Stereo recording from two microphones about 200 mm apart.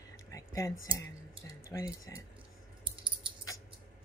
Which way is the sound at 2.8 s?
25° right (ahead or behind).